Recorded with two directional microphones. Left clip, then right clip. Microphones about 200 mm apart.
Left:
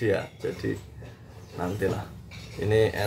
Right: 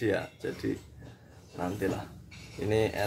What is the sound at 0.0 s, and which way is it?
Speech, 10° right (ahead or behind).